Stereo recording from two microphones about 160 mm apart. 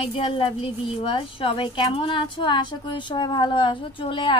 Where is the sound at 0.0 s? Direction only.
35° left (ahead or behind).